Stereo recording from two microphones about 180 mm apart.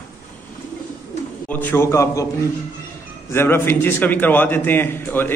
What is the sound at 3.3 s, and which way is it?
A man's voice, 15° left (ahead or behind).